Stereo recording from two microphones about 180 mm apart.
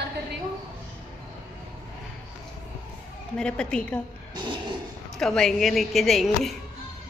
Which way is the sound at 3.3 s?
5° left (ahead or behind).